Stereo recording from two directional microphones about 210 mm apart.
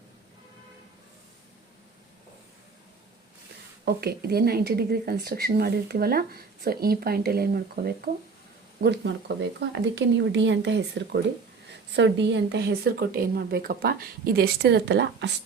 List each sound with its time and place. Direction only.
3.8 s speech: 50° right (ahead or behind)